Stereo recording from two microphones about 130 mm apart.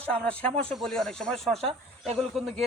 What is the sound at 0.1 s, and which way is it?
Speech, 10° left (ahead or behind).